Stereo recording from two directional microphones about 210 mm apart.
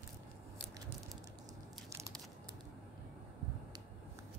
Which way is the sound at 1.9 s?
15° right (ahead or behind).